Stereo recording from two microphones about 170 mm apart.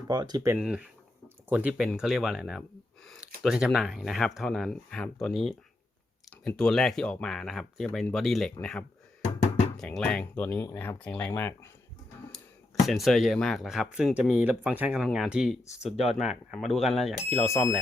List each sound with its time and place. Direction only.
0.1 s speech: 25° right (ahead or behind)
0.6 s speech: 5° right (ahead or behind)
9.7 s speech: 5° left (ahead or behind)
12.8 s speech: centre (ahead or behind)
15.8 s speech: 35° left (ahead or behind)
16.1 s speech: centre (ahead or behind)